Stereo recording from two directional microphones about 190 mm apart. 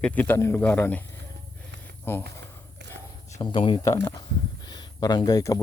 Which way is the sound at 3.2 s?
20° left (ahead or behind).